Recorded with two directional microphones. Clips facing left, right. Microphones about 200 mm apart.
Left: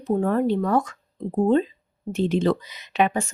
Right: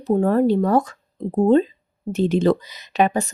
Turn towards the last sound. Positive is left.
turn(degrees=-40)  # may be behind; listen again after turning